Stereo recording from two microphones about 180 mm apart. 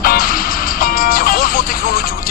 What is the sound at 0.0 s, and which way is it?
Music, 50° left (ahead or behind).